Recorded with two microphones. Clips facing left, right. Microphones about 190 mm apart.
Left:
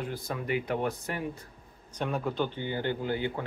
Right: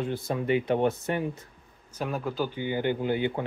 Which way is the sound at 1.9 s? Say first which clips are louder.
Even; 5° right (ahead or behind).